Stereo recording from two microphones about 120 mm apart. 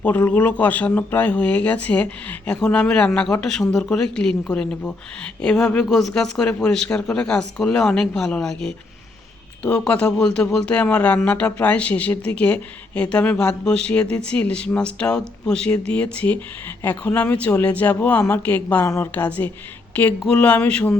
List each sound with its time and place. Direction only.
0.0 s speech: 15° left (ahead or behind)